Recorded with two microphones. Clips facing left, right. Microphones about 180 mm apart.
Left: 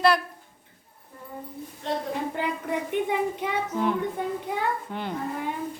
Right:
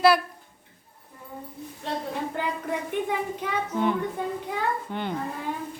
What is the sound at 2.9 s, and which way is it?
Speech, 20° left (ahead or behind).